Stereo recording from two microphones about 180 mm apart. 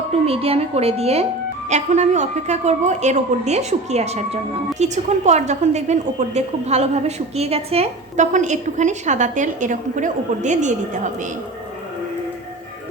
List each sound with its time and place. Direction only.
0.3 s a woman's voice: 35° right (ahead or behind)